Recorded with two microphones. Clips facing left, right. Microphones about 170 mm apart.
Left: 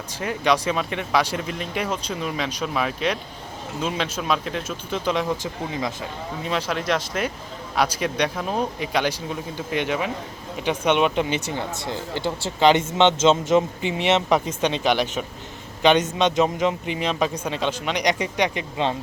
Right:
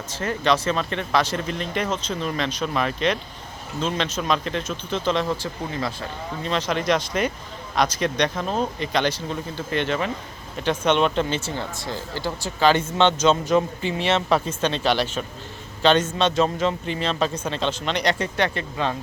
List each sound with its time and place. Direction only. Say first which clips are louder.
0.1 s a man's voice: even; 10° left (ahead or behind)